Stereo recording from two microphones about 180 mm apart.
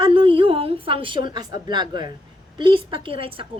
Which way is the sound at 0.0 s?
30° right (ahead or behind).